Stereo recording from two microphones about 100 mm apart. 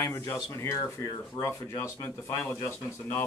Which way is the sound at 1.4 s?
55° left (ahead or behind).